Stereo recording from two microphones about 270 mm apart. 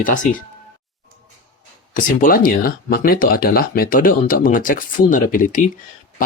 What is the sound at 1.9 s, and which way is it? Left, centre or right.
Speech, left.